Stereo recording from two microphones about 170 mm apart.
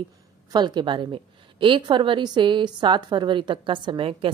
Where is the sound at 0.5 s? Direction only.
25° right (ahead or behind).